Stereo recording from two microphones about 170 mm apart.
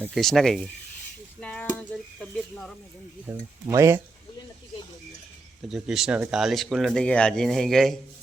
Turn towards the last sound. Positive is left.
turn(degrees=0)  # may be behind; listen again after turning